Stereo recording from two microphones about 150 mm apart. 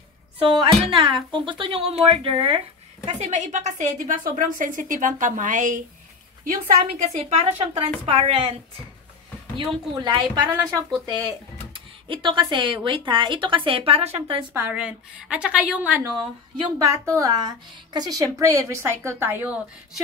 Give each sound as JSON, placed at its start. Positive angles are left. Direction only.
{"t": 0.4, "sound": "speech", "side_deg": -35}
{"t": 3.1, "sound": "a woman's voice", "side_deg": -50}
{"t": 7.2, "sound": "speech", "side_deg": -45}
{"t": 9.6, "sound": "a woman's voice", "side_deg": -30}
{"t": 14.5, "sound": "a woman's voice", "side_deg": -10}
{"t": 16.2, "sound": "speech", "side_deg": -30}
{"t": 16.7, "sound": "a woman's voice", "side_deg": -20}